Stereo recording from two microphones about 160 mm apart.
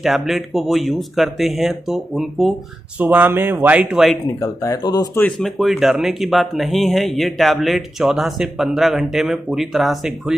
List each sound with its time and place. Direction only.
0.0 s speech: centre (ahead or behind)
3.0 s speech: 10° right (ahead or behind)
4.4 s speech: 20° left (ahead or behind)
5.2 s speech: centre (ahead or behind)